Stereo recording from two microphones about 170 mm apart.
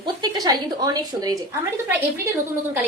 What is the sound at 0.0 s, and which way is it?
Speech, 25° right (ahead or behind).